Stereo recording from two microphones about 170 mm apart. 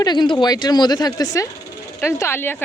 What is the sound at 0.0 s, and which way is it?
A woman's voice, 25° left (ahead or behind).